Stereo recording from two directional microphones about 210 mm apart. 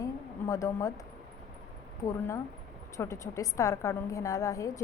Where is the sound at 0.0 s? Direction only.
15° left (ahead or behind).